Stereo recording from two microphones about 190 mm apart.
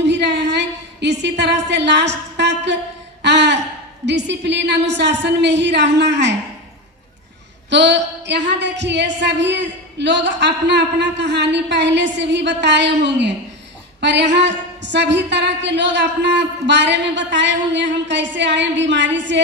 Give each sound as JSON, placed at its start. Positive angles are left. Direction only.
{"t": 0.0, "sound": "a woman's voice", "side_deg": -65}
{"t": 7.7, "sound": "a woman's voice", "side_deg": -65}